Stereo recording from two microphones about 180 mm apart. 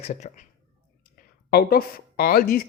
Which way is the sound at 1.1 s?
60° left (ahead or behind).